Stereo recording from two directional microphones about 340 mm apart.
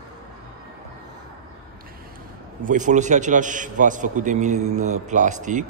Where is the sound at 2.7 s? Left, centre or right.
Right.